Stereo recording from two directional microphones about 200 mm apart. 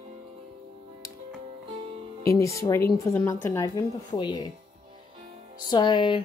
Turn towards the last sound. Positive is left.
turn(degrees=25)  # may be behind; listen again after turning